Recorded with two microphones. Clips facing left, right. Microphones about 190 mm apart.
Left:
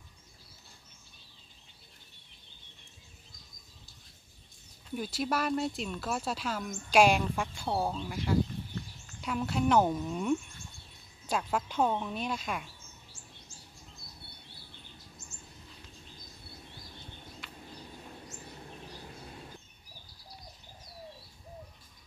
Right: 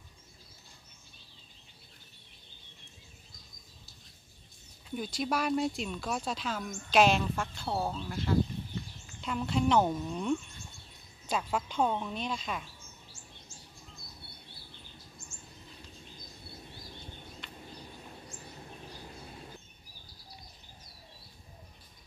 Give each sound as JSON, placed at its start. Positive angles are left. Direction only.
{"t": 4.9, "sound": "a woman's voice", "side_deg": 5}